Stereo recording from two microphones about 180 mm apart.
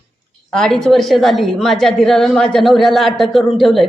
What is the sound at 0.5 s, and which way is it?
A woman's voice, 5° left (ahead or behind).